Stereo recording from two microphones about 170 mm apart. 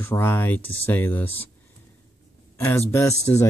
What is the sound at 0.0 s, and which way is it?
Speech, 15° left (ahead or behind).